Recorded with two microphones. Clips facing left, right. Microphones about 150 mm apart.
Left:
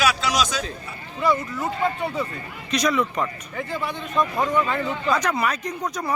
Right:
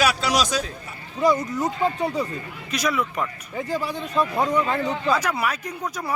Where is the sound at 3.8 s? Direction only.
35° right (ahead or behind).